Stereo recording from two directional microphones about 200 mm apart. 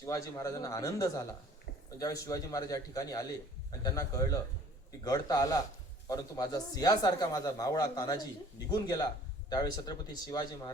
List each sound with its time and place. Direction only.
0.0 s a man's voice: 15° left (ahead or behind)